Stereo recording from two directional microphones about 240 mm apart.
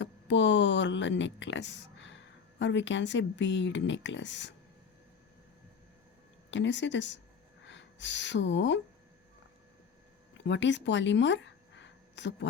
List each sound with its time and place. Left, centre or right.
0.0 s speech: left
6.5 s speech: left
10.4 s speech: left